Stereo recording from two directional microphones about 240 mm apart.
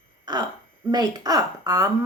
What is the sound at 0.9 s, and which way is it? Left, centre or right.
Speech, centre.